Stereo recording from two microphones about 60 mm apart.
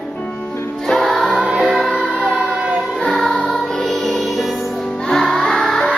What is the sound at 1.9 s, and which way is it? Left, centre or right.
Emergency vehicle, right.